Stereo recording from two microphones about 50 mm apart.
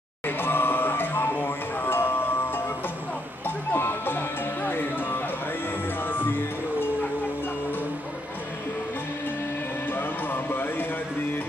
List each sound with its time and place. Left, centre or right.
0.4 s music: left
9.8 s music: left